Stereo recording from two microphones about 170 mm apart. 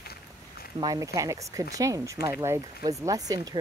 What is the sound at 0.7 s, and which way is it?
Speech, 20° right (ahead or behind).